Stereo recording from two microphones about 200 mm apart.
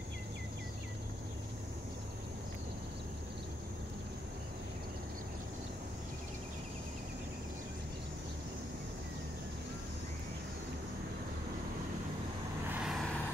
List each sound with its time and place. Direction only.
12.6 s vehicle: centre (ahead or behind)